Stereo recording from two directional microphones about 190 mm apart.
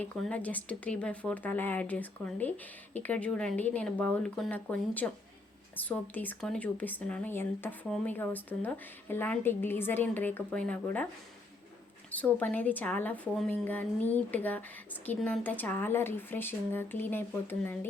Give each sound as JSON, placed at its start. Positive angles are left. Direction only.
{"t": 0.0, "sound": "speech", "side_deg": 5}
{"t": 12.1, "sound": "speech", "side_deg": 10}